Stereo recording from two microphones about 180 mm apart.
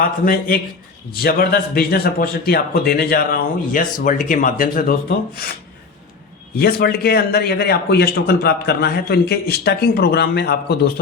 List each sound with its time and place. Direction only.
0.3 s a man's voice: 55° left (ahead or behind)
6.6 s a man's voice: 60° left (ahead or behind)